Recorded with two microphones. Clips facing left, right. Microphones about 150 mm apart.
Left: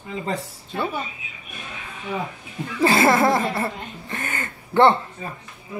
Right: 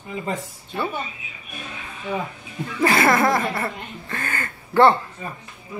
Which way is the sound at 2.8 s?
25° left (ahead or behind).